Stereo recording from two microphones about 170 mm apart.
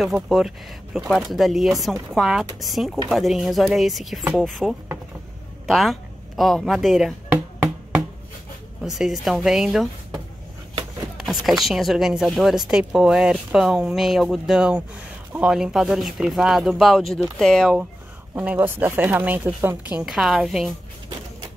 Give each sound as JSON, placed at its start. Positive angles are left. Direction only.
{"t": 0.0, "sound": "speech", "side_deg": 0}
{"t": 8.8, "sound": "speech", "side_deg": 0}
{"t": 11.1, "sound": "speech", "side_deg": 0}
{"t": 18.3, "sound": "speech", "side_deg": -10}